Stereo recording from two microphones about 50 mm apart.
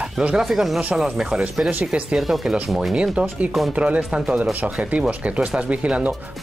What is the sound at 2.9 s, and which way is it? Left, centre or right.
Speech, right.